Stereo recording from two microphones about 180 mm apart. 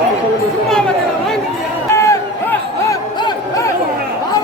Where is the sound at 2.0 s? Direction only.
15° left (ahead or behind).